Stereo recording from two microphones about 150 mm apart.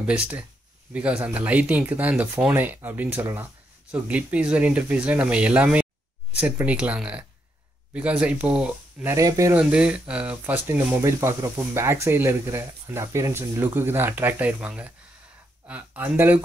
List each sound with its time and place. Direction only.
0.0 s speech: 10° right (ahead or behind)
9.1 s speech: 20° right (ahead or behind)
9.6 s speech: 5° right (ahead or behind)